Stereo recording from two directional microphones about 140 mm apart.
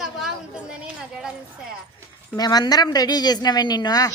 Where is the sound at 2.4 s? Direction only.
30° left (ahead or behind).